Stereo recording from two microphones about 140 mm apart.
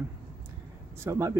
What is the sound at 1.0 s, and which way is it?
Speech, 20° right (ahead or behind).